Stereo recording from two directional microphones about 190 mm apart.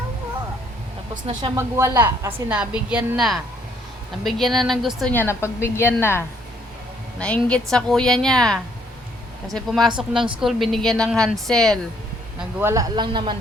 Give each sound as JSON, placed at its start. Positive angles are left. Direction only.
{"t": 1.1, "sound": "a woman's voice", "side_deg": -25}
{"t": 5.1, "sound": "a woman's voice", "side_deg": 15}
{"t": 12.5, "sound": "speech", "side_deg": -15}